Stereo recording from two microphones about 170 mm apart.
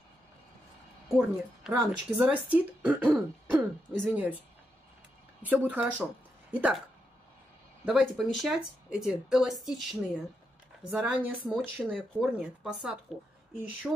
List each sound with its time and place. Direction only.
1.0 s speech: centre (ahead or behind)
5.4 s speech: 10° right (ahead or behind)
7.8 s speech: centre (ahead or behind)